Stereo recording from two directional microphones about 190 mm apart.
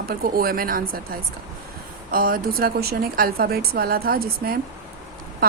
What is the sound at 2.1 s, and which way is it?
Speech, 50° right (ahead or behind).